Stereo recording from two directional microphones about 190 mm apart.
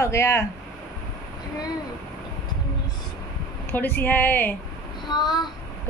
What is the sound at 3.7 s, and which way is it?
Speech, 10° left (ahead or behind).